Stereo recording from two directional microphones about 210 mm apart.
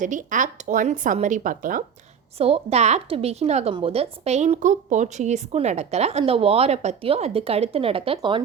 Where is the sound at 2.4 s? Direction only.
30° right (ahead or behind).